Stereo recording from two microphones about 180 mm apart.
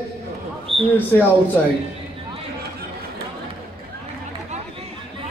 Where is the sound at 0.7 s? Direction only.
30° right (ahead or behind).